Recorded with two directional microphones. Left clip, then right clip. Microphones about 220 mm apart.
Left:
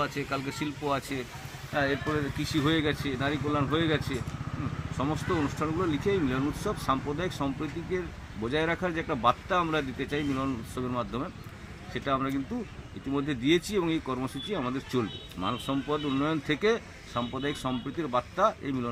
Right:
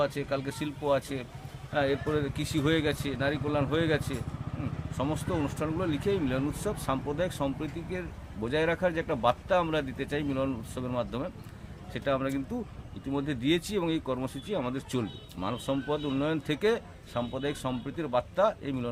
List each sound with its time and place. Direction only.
0.0 s speech: 25° right (ahead or behind)
1.7 s speech: 25° right (ahead or behind)